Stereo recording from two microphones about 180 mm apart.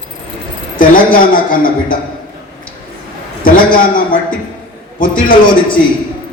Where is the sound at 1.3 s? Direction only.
50° left (ahead or behind).